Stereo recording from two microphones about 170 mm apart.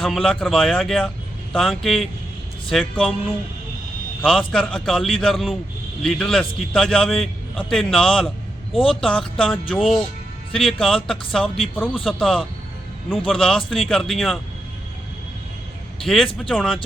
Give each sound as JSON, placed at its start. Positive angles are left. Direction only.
{"t": 0.0, "sound": "a man's voice", "side_deg": 0}
{"t": 4.2, "sound": "a man's voice", "side_deg": 0}
{"t": 16.4, "sound": "a man's voice", "side_deg": 0}